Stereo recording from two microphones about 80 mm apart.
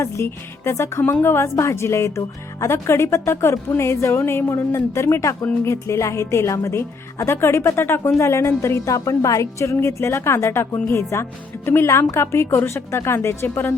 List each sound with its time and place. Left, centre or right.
0.0 s speech: left